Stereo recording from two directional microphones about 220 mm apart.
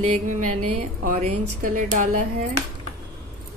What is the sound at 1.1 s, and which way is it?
Speech, 35° right (ahead or behind).